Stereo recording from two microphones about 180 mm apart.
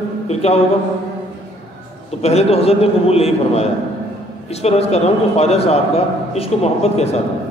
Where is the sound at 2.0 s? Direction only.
35° left (ahead or behind).